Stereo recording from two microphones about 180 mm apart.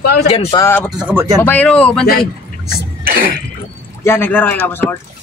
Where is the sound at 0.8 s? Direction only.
5° right (ahead or behind).